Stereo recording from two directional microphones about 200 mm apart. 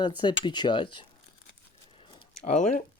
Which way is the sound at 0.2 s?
20° left (ahead or behind).